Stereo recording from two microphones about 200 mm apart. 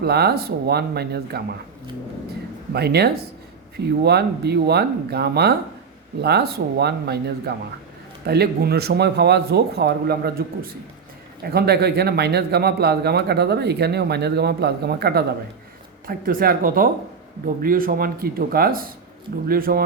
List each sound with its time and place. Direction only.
0.0 s a man's voice: 55° right (ahead or behind)
2.7 s a man's voice: 55° right (ahead or behind)